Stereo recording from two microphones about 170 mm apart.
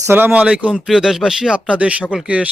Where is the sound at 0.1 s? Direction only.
10° right (ahead or behind).